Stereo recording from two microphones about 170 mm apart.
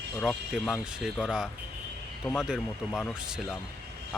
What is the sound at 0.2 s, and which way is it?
Speech, centre (ahead or behind).